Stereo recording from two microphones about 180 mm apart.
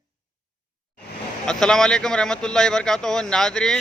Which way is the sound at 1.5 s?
5° left (ahead or behind).